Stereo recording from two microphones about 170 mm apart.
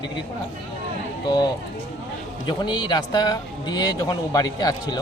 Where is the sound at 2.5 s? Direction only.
25° left (ahead or behind).